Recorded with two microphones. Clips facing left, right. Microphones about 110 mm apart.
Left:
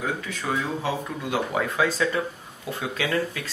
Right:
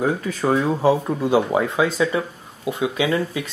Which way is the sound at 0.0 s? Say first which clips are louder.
Right 8 dB; 40° right (ahead or behind).